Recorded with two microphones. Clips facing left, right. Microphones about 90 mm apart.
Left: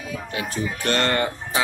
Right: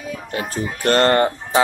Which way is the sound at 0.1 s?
40° right (ahead or behind).